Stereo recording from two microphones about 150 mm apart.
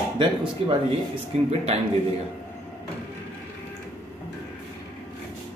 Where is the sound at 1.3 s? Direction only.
45° right (ahead or behind).